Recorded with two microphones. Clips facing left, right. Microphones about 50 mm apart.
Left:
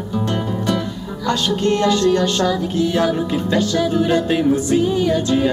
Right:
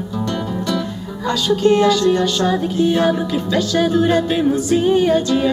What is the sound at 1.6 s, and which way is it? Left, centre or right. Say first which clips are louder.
Music: right 5 dB; centre.